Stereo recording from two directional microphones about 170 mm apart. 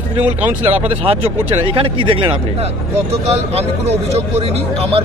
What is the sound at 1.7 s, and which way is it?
Speech, 30° right (ahead or behind).